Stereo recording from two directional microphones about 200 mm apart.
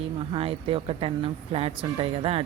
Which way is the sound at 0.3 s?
30° right (ahead or behind).